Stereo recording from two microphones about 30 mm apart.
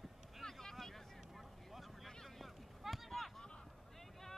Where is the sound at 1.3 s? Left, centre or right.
Centre.